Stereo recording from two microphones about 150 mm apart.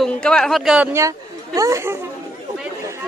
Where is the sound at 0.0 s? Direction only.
5° left (ahead or behind).